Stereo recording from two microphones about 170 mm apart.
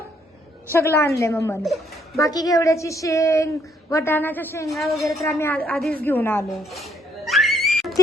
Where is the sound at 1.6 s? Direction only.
Centre (ahead or behind).